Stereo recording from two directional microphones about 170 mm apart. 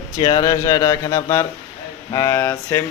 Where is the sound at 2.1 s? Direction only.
15° left (ahead or behind).